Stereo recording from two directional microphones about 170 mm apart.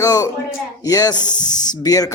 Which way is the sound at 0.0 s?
20° left (ahead or behind).